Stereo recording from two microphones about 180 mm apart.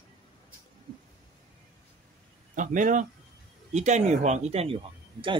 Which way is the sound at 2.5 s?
45° right (ahead or behind).